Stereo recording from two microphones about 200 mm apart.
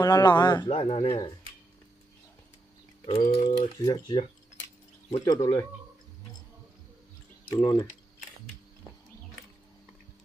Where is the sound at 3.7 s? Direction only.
20° left (ahead or behind).